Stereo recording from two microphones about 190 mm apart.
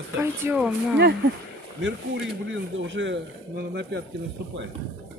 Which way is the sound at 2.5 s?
75° right (ahead or behind).